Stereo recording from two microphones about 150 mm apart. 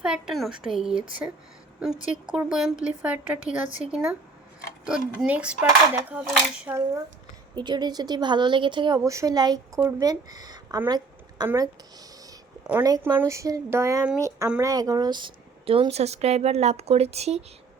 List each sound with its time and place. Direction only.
0.0 s a woman's voice: 5° right (ahead or behind)
2.0 s a woman's voice: 5° right (ahead or behind)
7.5 s a woman's voice: 30° right (ahead or behind)
10.8 s a sound: 30° right (ahead or behind)
11.4 s a woman's voice: 25° right (ahead or behind)
12.8 s a woman's voice: 25° right (ahead or behind); by 17.4 s 45° right (ahead or behind)